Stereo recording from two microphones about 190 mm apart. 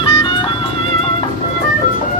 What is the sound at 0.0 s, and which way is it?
Music, 25° left (ahead or behind).